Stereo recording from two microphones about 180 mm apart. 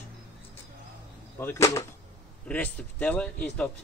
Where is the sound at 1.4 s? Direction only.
15° left (ahead or behind).